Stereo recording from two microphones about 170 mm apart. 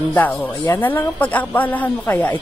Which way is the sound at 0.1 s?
10° left (ahead or behind).